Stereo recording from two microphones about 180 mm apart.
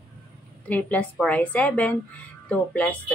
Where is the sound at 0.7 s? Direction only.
10° left (ahead or behind).